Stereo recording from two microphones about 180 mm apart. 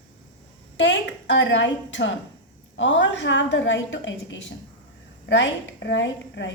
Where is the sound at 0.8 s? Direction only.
90° left.